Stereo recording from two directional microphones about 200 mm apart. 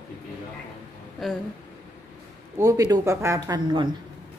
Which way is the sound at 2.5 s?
15° right (ahead or behind).